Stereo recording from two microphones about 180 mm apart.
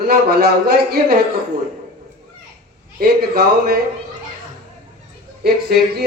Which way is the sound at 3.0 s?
55° right (ahead or behind).